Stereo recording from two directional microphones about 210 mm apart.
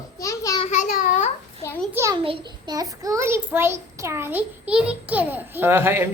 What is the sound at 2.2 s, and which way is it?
A child's voice, 25° right (ahead or behind).